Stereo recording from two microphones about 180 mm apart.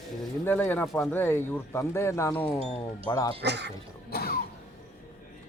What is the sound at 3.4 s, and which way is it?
Speech, 70° right (ahead or behind).